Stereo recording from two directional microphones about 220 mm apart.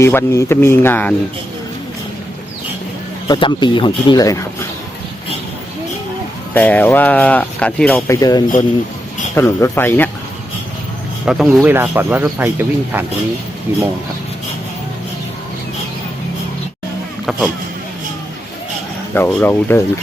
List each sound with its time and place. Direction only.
0.0 s speech: 10° left (ahead or behind)
3.2 s speech: 20° left (ahead or behind)
6.5 s speech: 5° left (ahead or behind)
11.3 s speech: centre (ahead or behind)
19.1 s speech: 10° left (ahead or behind)